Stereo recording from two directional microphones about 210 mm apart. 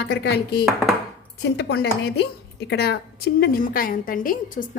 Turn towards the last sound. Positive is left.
turn(degrees=40)  # may be behind; listen again after turning